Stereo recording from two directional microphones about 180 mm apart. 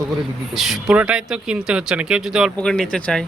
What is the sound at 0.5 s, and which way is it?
Speech, centre (ahead or behind).